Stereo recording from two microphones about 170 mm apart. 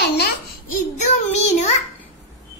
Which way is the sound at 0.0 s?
70° left (ahead or behind).